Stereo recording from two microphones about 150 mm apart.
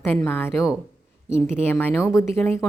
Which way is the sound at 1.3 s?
45° right (ahead or behind).